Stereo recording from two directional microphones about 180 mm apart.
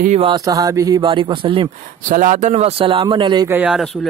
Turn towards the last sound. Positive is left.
turn(degrees=0)  # may be behind; listen again after turning